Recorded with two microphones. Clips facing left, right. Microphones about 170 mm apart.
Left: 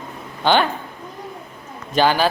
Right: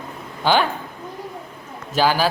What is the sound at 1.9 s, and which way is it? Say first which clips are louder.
Speech: left 1 dB; 5° right (ahead or behind).